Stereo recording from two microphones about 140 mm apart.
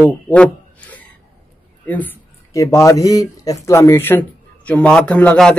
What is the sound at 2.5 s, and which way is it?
A man's voice, 25° left (ahead or behind).